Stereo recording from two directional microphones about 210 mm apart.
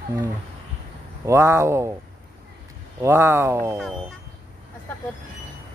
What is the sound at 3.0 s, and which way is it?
Speech, 15° right (ahead or behind).